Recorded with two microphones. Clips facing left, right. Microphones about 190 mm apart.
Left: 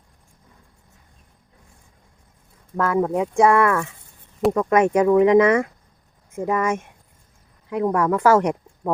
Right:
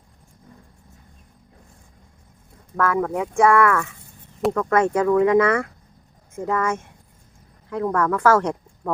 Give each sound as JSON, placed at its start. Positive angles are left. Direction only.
{"t": 2.7, "sound": "speech", "side_deg": 20}